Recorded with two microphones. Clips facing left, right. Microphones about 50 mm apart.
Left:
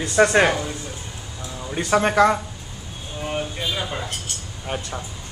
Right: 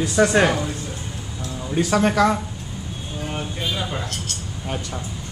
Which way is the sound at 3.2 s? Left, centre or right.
Centre.